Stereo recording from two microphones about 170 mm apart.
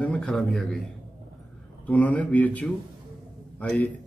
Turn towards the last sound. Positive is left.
turn(degrees=5)  # may be behind; listen again after turning